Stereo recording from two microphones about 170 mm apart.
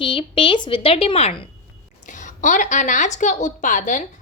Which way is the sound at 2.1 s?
45° left (ahead or behind).